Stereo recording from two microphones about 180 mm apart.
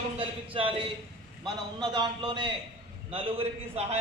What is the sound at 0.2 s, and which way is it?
A man's voice, 30° right (ahead or behind).